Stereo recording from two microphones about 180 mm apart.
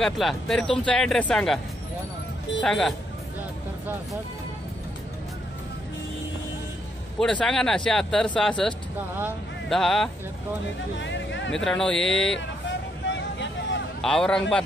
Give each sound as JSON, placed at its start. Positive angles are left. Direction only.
{"t": 0.0, "sound": "speech", "side_deg": 0}
{"t": 2.6, "sound": "speech", "side_deg": 5}
{"t": 7.2, "sound": "speech", "side_deg": 5}
{"t": 11.0, "sound": "music", "side_deg": 85}
{"t": 11.5, "sound": "speech", "side_deg": 5}
{"t": 12.4, "sound": "vehicle", "side_deg": 85}
{"t": 14.0, "sound": "speech", "side_deg": 5}